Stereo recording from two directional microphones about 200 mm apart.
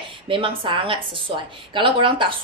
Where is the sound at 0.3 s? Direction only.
25° right (ahead or behind).